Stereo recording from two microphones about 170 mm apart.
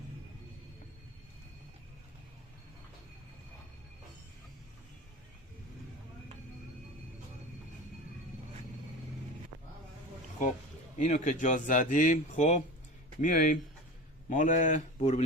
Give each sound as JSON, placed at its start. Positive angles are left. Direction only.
{"t": 10.9, "sound": "speech", "side_deg": 45}